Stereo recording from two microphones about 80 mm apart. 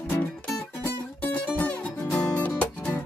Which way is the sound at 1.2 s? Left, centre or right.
Left.